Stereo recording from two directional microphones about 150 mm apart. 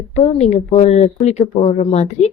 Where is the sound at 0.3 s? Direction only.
45° left (ahead or behind).